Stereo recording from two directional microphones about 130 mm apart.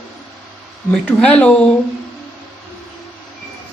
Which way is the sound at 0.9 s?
5° left (ahead or behind).